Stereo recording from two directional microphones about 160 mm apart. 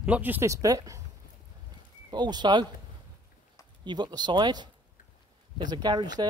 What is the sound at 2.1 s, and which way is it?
Speech, 25° right (ahead or behind).